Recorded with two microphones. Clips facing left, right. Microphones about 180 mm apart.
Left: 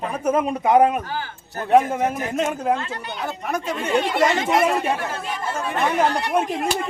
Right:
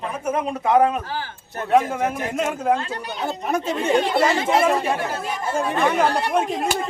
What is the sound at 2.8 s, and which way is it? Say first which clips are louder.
Speech: right 1 dB; 35° right (ahead or behind).